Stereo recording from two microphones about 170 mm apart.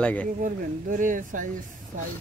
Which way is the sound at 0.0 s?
10° left (ahead or behind).